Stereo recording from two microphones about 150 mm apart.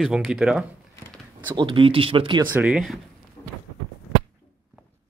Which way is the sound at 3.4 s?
20° left (ahead or behind).